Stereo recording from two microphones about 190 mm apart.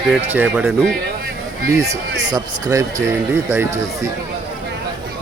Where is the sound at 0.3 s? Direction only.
10° right (ahead or behind).